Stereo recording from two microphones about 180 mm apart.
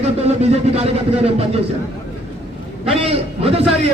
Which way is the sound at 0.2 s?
35° right (ahead or behind).